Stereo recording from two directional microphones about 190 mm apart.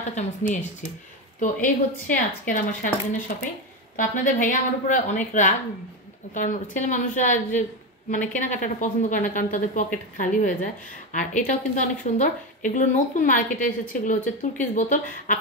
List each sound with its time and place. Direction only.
0.1 s a woman's voice: 40° left (ahead or behind)